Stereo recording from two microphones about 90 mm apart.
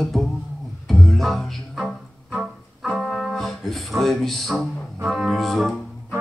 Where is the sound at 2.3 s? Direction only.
10° right (ahead or behind).